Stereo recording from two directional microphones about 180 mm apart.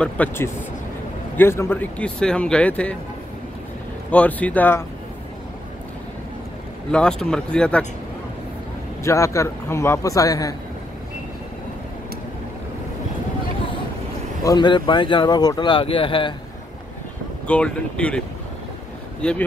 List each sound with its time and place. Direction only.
0.0 s speech: 10° left (ahead or behind)
4.1 s speech: 10° left (ahead or behind)
6.9 s speech: 5° left (ahead or behind)
9.0 s speech: 15° left (ahead or behind)
14.4 s speech: 20° left (ahead or behind)
17.5 s speech: 5° left (ahead or behind)
19.2 s speech: 5° left (ahead or behind)